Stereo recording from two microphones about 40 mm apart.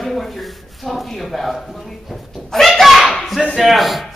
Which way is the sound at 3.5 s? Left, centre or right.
Centre.